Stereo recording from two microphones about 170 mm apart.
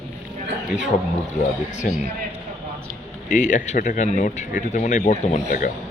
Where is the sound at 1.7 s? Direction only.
45° left (ahead or behind).